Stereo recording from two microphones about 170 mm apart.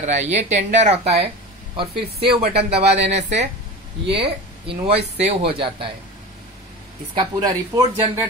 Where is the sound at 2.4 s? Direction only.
75° right (ahead or behind).